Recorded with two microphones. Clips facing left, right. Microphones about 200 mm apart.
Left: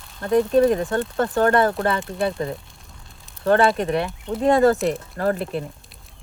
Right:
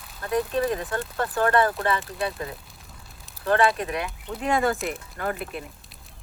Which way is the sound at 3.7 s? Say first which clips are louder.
Left 7 dB; 30° left (ahead or behind).